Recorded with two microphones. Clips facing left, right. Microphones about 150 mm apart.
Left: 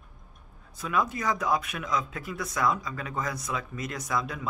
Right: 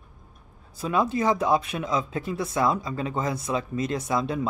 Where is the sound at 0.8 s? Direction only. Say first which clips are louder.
Right 5 dB; 30° right (ahead or behind).